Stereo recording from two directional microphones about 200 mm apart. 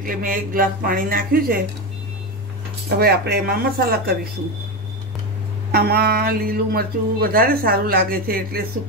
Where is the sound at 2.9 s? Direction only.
50° right (ahead or behind).